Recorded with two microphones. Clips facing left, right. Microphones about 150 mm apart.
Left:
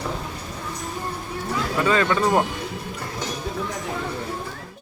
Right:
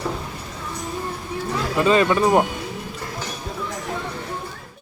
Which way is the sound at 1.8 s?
20° right (ahead or behind).